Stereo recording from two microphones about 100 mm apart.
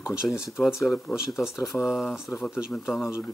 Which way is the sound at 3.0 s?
25° left (ahead or behind).